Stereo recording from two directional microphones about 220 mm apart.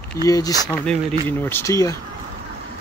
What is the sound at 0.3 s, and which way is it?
Speech, 15° left (ahead or behind).